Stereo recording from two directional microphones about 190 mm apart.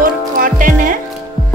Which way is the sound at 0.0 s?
45° right (ahead or behind).